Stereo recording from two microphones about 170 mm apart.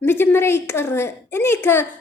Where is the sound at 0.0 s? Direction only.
15° left (ahead or behind).